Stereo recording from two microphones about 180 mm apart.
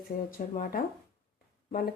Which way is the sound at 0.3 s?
50° left (ahead or behind).